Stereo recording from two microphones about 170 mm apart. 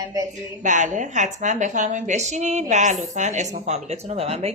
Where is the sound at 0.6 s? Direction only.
45° right (ahead or behind).